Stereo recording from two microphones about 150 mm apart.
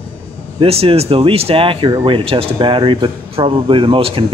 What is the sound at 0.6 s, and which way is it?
Speech, 40° right (ahead or behind).